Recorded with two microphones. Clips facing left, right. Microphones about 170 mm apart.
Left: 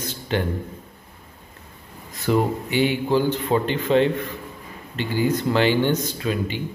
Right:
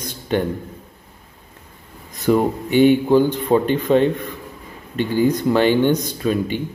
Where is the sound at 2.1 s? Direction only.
20° right (ahead or behind).